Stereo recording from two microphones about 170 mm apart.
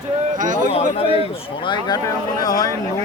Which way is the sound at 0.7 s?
35° left (ahead or behind).